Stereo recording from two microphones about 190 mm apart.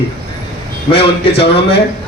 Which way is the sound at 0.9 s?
30° left (ahead or behind).